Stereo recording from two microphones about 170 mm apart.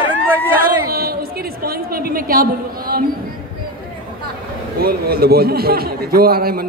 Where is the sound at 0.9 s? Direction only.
60° right (ahead or behind).